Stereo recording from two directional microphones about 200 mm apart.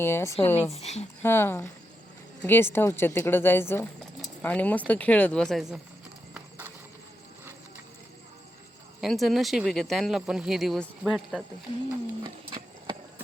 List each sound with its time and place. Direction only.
0.0 s a woman's voice: 10° left (ahead or behind)
0.7 s speech: 35° left (ahead or behind)
1.2 s a woman's voice: 10° left (ahead or behind)
4.2 s a sound: 5° left (ahead or behind)
4.9 s speech: 5° left (ahead or behind)
9.0 s speech: centre (ahead or behind)